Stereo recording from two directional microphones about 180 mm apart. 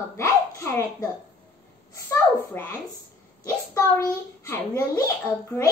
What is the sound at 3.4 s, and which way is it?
A child's voice, 15° left (ahead or behind).